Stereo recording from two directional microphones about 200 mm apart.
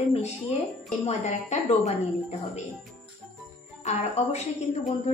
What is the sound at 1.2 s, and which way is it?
Speech, 35° left (ahead or behind).